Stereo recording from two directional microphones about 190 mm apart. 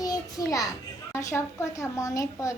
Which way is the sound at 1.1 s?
15° left (ahead or behind).